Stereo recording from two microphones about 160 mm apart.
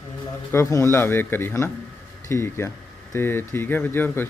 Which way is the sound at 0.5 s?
15° left (ahead or behind).